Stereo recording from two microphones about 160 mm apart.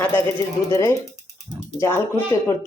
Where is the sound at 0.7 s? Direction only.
15° left (ahead or behind).